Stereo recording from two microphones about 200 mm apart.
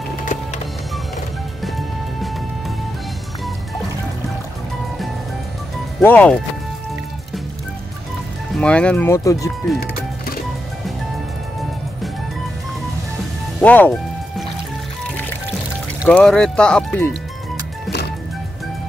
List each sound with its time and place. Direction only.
1.6 s music: centre (ahead or behind)
5.9 s speech: 5° left (ahead or behind)
8.5 s speech: 5° left (ahead or behind)
9.8 s music: 50° left (ahead or behind)
13.6 s speech: 10° left (ahead or behind)
16.1 s speech: 5° left (ahead or behind)